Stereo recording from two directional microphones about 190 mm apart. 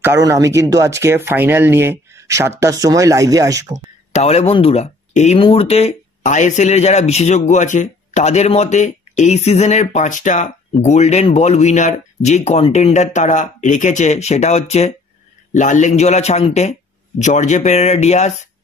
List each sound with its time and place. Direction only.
0.0 s speech: 15° right (ahead or behind)
4.1 s speech: 35° left (ahead or behind)